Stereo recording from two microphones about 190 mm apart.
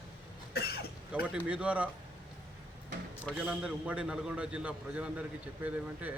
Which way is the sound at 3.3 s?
5° right (ahead or behind).